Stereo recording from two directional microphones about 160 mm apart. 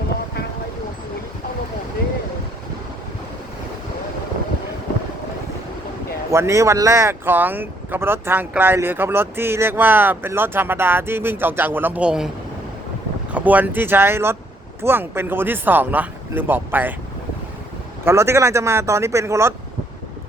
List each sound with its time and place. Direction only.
6.3 s speech: 20° right (ahead or behind)
13.3 s speech: 10° right (ahead or behind)
18.0 s speech: 15° right (ahead or behind)